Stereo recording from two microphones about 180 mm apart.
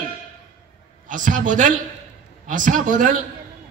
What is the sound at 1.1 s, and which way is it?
A man's voice, 45° right (ahead or behind).